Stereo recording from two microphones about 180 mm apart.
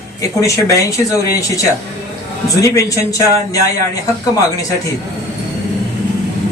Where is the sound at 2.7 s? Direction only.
20° left (ahead or behind).